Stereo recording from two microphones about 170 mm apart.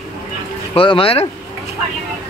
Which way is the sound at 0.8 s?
30° left (ahead or behind).